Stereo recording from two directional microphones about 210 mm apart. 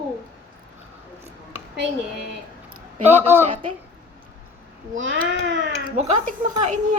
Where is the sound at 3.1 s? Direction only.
10° right (ahead or behind).